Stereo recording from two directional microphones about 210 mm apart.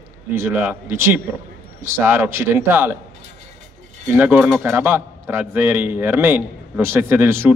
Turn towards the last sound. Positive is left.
turn(degrees=-10)  # may be behind; listen again after turning